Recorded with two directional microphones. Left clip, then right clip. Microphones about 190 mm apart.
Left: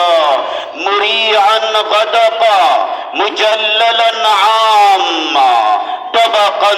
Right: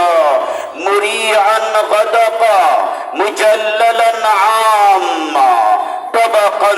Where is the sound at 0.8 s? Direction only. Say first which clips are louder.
Left 2 dB; 35° right (ahead or behind).